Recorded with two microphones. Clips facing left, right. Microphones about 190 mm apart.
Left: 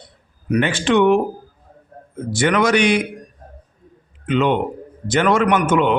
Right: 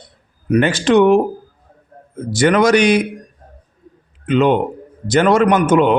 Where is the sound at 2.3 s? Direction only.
40° right (ahead or behind).